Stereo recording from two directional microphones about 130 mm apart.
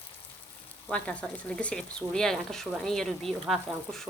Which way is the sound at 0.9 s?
10° left (ahead or behind).